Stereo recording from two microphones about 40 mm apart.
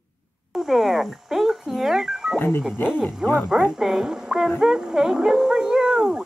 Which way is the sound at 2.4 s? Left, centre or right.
Left.